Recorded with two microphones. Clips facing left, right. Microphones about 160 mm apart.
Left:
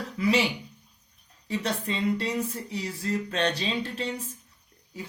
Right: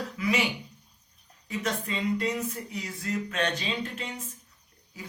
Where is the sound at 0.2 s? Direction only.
30° left (ahead or behind).